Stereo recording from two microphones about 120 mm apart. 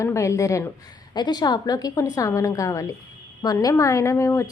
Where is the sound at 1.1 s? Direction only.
35° left (ahead or behind).